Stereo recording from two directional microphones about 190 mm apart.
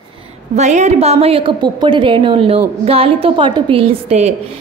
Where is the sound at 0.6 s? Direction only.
40° right (ahead or behind).